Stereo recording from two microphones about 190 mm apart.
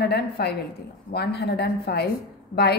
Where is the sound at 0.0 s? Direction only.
60° left (ahead or behind).